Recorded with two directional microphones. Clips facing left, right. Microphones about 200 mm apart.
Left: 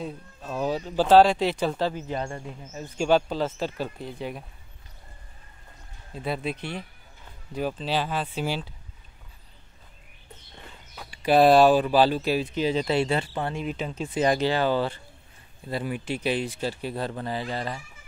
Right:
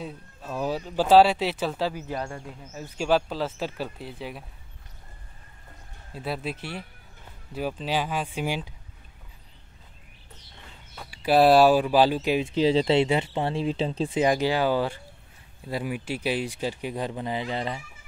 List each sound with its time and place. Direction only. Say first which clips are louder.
0.0 s speech: left 2 dB; 5° right (ahead or behind)
6.1 s speech: left 2 dB; 5° right (ahead or behind)
11.0 s speech: left 1 dB; 5° right (ahead or behind); by 14.1 s 30° right (ahead or behind)
14.1 s speech: left 1 dB; 10° right (ahead or behind)